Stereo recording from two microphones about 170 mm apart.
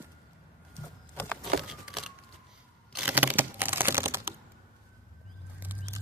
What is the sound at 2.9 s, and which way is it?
Computer keyboard, 10° right (ahead or behind).